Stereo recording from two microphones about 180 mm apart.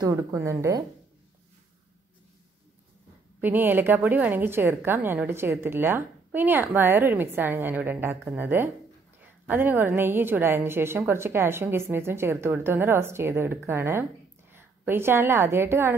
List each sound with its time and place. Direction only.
0.0 s a woman's voice: 15° right (ahead or behind)
3.3 s a woman's voice: 10° right (ahead or behind)